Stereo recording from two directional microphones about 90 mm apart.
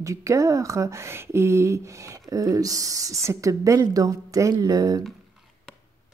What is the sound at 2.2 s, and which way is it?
Speech, 45° right (ahead or behind).